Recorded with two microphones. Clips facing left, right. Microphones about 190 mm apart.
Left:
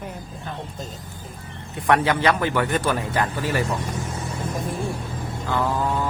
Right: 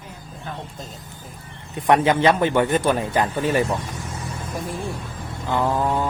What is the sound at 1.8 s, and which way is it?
A man's voice, 20° right (ahead or behind).